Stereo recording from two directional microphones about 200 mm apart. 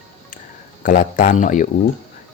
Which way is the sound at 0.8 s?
40° left (ahead or behind).